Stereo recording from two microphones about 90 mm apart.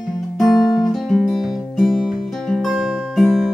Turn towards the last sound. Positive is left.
turn(degrees=0)  # may be behind; listen again after turning